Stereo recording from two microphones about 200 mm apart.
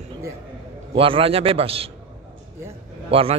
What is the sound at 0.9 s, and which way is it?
Speech, 25° right (ahead or behind).